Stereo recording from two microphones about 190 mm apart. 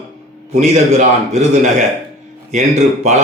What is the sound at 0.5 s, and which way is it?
Speech, 35° right (ahead or behind).